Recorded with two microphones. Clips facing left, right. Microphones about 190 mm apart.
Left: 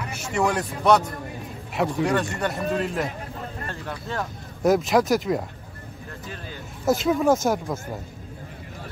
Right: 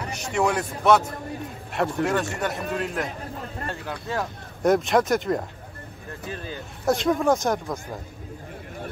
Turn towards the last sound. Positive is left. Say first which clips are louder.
# left 1 dB
turn(degrees=5)  # may be behind; listen again after turning